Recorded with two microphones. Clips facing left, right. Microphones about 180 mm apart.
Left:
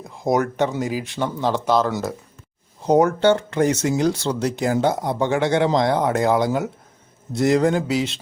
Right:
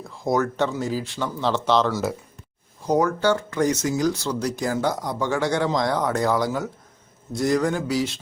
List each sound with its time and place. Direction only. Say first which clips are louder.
0.0 s speech: left 2 dB; 20° left (ahead or behind)
2.8 s speech: left 4 dB; 25° left (ahead or behind)